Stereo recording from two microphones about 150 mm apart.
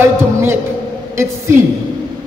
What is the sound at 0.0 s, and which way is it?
Music, 15° right (ahead or behind).